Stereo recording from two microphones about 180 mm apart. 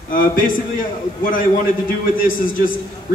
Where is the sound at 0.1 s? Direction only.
50° left (ahead or behind).